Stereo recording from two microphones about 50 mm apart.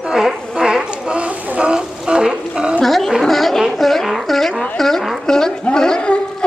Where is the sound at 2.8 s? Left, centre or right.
Centre.